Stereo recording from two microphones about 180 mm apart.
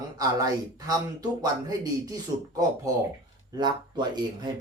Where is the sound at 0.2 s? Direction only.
20° right (ahead or behind).